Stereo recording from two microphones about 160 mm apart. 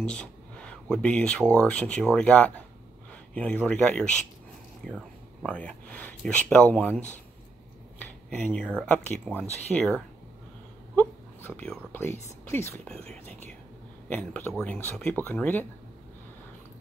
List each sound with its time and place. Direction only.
0.0 s speech: 5° left (ahead or behind)
11.0 s speech: 10° left (ahead or behind)
14.0 s speech: 10° left (ahead or behind)